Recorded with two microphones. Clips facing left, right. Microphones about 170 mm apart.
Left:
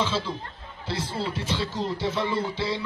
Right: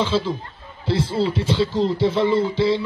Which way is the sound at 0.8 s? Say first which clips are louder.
Right 9 dB; 30° right (ahead or behind).